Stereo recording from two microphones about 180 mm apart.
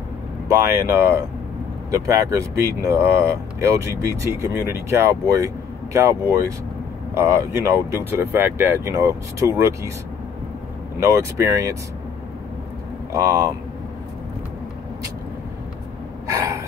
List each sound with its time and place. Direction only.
0.5 s speech: 15° right (ahead or behind)
11.0 s speech: 15° right (ahead or behind)
13.1 s speech: 20° right (ahead or behind)
16.3 s gasp: 20° right (ahead or behind)